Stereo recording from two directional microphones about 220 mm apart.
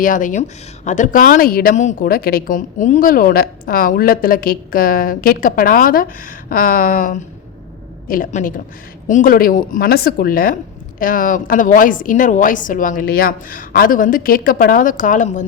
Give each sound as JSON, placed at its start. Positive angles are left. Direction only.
{"t": 0.0, "sound": "a woman's voice", "side_deg": 35}